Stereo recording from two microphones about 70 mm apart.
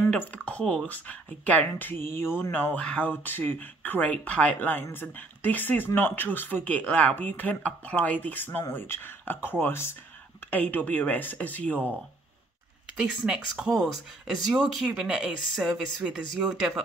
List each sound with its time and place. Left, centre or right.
0.1 s a sound: centre
0.8 s speech: left
2.5 s speech: left
10.5 s speech: left
12.9 s speech: centre